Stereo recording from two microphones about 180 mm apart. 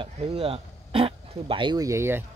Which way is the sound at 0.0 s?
30° right (ahead or behind).